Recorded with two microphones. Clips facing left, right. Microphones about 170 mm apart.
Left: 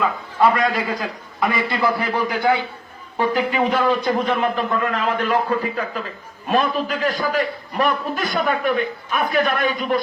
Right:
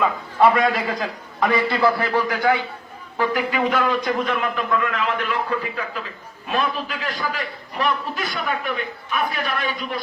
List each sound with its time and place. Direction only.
0.4 s a man's voice: centre (ahead or behind)
1.5 s a man's voice: 15° left (ahead or behind); by 10.0 s 50° left (ahead or behind)